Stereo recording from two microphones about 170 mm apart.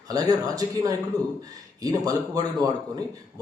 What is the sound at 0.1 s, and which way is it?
A man's voice, 20° right (ahead or behind).